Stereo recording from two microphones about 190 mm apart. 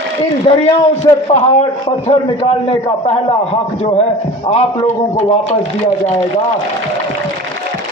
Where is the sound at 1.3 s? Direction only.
35° left (ahead or behind).